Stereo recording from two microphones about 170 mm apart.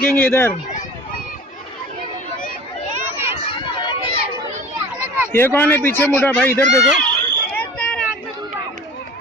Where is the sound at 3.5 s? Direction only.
30° left (ahead or behind).